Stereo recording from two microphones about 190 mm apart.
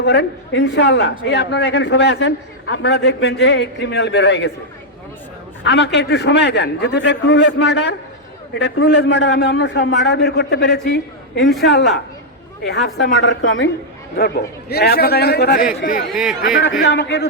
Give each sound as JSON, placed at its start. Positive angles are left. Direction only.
{"t": 0.0, "sound": "a man's voice", "side_deg": 65}
{"t": 5.6, "sound": "a man's voice", "side_deg": 65}
{"t": 14.2, "sound": "a man's voice", "side_deg": 55}
{"t": 15.8, "sound": "speech", "side_deg": 50}
{"t": 16.1, "sound": "speech", "side_deg": 0}
{"t": 16.8, "sound": "a man's voice", "side_deg": 65}